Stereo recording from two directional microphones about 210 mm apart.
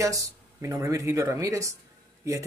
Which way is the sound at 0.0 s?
15° right (ahead or behind).